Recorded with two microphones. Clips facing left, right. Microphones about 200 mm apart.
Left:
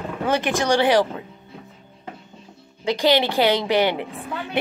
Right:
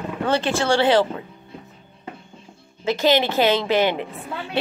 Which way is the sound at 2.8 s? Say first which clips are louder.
Even; 15° left (ahead or behind).